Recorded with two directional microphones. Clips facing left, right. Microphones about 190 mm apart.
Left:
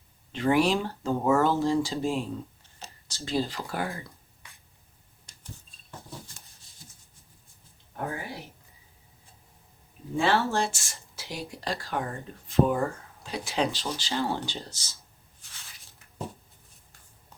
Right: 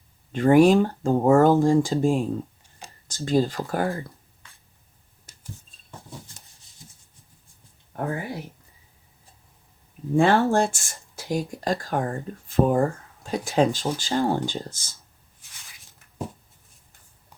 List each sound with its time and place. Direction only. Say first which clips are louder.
0.3 s speech: right 8 dB; 50° right (ahead or behind)
5.3 s a sound: right 4 dB; 5° right (ahead or behind)
10.2 s speech: right 6 dB; 50° right (ahead or behind)